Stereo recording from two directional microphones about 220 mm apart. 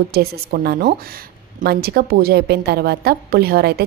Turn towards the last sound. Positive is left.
turn(degrees=-45)  # may be behind; listen again after turning